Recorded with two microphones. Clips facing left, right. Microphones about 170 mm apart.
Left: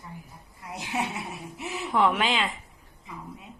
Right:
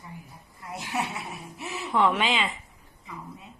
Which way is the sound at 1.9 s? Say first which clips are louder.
Even; centre (ahead or behind).